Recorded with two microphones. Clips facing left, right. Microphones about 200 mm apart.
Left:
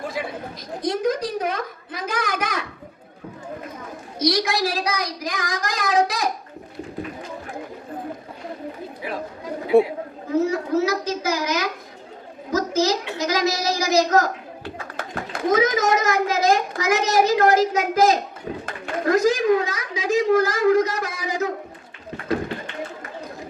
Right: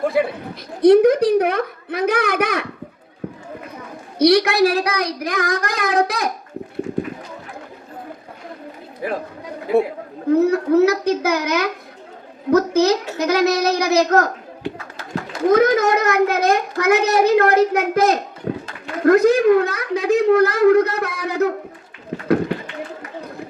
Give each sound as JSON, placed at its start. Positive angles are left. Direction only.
{"t": 0.0, "sound": "a sound", "side_deg": -60}
{"t": 0.8, "sound": "a child's voice", "side_deg": -60}
{"t": 4.2, "sound": "a child's voice", "side_deg": -65}
{"t": 9.0, "sound": "speech", "side_deg": -50}
{"t": 10.2, "sound": "a child's voice", "side_deg": -60}
{"t": 15.4, "sound": "a child's voice", "side_deg": -60}
{"t": 18.5, "sound": "a sound", "side_deg": -55}
{"t": 19.0, "sound": "a child's voice", "side_deg": -60}